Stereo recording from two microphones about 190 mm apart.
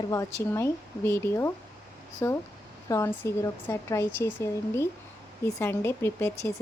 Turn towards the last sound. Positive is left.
turn(degrees=10)  # may be behind; listen again after turning